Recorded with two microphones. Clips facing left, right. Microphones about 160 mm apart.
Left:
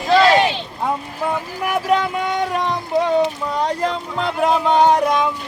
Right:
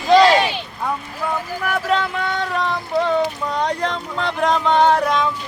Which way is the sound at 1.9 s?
15° left (ahead or behind).